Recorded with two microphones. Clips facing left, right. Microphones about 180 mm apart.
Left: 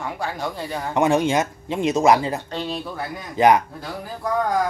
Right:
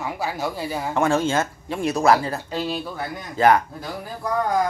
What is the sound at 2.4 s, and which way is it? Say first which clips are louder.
Speech: right 1 dB; 5° right (ahead or behind).